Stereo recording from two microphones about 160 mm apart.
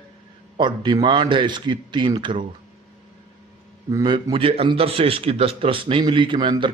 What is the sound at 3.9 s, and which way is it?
A man's voice, 25° right (ahead or behind).